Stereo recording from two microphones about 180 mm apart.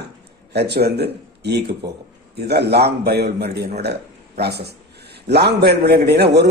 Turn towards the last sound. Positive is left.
turn(degrees=-65)  # may be behind; listen again after turning